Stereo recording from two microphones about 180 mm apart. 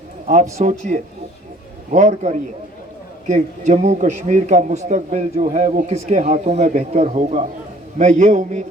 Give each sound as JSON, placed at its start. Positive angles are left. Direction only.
{"t": 0.5, "sound": "a man's voice", "side_deg": -40}